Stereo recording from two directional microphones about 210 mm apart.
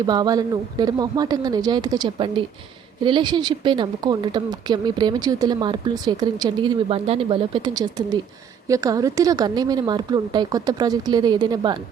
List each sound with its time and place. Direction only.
0.0 s speech: 20° right (ahead or behind)